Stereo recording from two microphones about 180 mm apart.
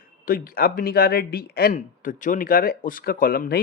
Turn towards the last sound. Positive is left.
turn(degrees=55)  # may be behind; listen again after turning